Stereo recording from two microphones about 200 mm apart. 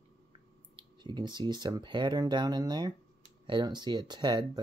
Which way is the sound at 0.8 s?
20° right (ahead or behind).